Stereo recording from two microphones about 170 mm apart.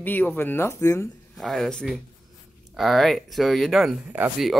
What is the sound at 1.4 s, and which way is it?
Speech, centre (ahead or behind).